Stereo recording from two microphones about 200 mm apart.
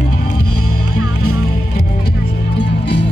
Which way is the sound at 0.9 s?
90° left.